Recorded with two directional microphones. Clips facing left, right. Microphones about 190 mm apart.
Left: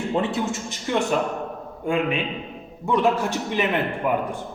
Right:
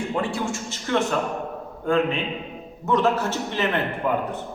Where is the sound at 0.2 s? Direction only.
20° left (ahead or behind).